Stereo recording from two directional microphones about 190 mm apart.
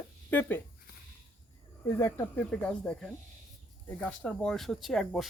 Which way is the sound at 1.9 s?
15° left (ahead or behind).